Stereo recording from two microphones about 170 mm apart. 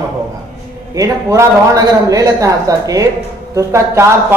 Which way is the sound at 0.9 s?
20° right (ahead or behind).